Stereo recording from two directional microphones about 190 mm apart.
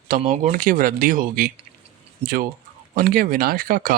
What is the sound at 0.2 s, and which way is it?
Speech, 40° right (ahead or behind).